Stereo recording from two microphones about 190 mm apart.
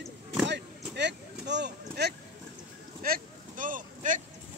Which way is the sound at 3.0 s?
45° right (ahead or behind).